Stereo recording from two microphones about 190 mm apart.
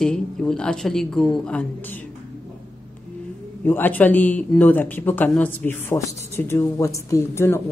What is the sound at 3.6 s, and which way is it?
Speech, 10° left (ahead or behind).